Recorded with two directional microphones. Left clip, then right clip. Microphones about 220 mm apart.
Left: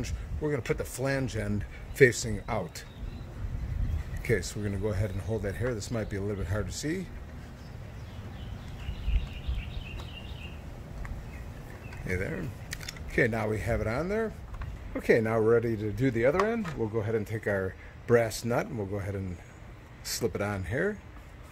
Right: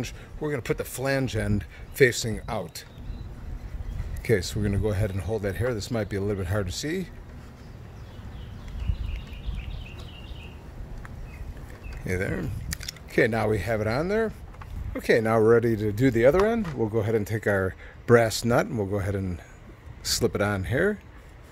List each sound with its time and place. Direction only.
0.0 s speech: 40° right (ahead or behind)
4.2 s speech: 40° right (ahead or behind)
12.1 s speech: 45° right (ahead or behind)